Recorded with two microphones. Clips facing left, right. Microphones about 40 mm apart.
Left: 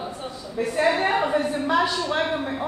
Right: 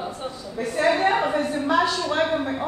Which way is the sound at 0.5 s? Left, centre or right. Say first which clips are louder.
Even; centre.